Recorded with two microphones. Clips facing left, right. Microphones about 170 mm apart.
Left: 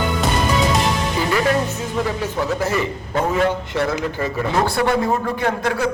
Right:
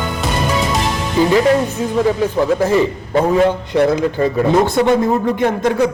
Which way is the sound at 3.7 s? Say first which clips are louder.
Right 7 dB; 20° right (ahead or behind).